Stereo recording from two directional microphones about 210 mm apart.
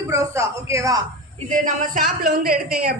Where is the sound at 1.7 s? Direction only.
40° right (ahead or behind).